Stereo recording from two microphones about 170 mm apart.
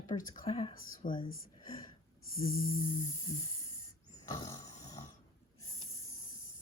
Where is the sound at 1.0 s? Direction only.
55° left (ahead or behind).